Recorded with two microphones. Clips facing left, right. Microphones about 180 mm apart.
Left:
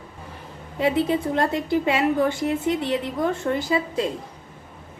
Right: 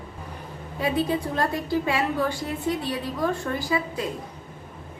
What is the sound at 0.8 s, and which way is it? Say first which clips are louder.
A woman's voice: left 3 dB; 25° left (ahead or behind).